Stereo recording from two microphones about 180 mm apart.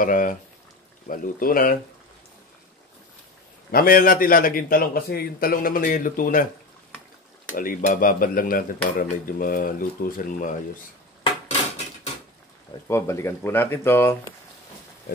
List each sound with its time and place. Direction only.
0.0 s speech: 50° left (ahead or behind)
3.7 s speech: 55° left (ahead or behind)
7.5 s speech: 50° left (ahead or behind)
12.8 s speech: 15° left (ahead or behind)